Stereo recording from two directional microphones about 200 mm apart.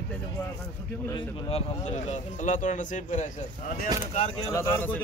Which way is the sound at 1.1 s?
30° left (ahead or behind).